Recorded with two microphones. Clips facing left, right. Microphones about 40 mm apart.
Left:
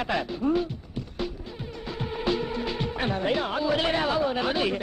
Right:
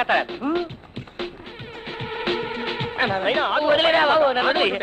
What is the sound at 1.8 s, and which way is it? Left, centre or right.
Speech, right.